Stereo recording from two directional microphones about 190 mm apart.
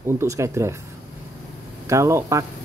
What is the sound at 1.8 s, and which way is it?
Speech, 15° right (ahead or behind).